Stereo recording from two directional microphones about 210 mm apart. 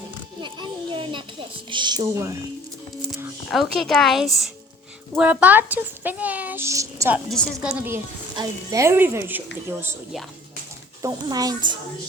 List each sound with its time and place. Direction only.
0.4 s a sound: 20° right (ahead or behind)
3.8 s a woman's voice: centre (ahead or behind)
7.3 s a woman's voice: centre (ahead or behind)
7.7 s a woman's voice: 10° right (ahead or behind)